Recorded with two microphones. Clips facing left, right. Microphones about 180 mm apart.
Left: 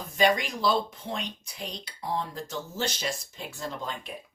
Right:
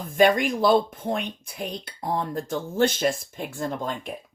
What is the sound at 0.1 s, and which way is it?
Speech, 50° right (ahead or behind).